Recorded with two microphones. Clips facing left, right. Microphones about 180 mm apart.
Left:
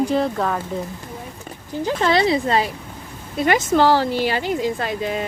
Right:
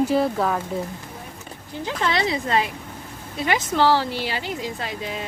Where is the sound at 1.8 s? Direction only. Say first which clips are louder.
Left 6 dB; 35° left (ahead or behind).